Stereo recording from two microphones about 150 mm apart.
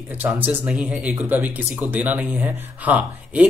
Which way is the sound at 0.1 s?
10° right (ahead or behind).